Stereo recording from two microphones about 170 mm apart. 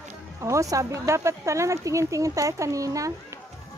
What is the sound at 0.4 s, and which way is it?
Speech, 20° right (ahead or behind).